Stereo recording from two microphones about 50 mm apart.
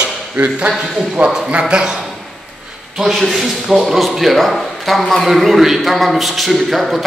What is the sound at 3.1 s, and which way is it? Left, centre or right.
Speech, centre.